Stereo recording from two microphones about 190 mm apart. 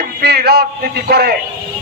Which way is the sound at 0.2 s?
60° right (ahead or behind).